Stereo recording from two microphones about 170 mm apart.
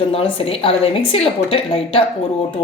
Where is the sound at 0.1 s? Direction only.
35° left (ahead or behind).